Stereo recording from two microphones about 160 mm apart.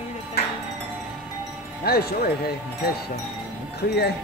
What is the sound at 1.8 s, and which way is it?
Speech, 75° left (ahead or behind).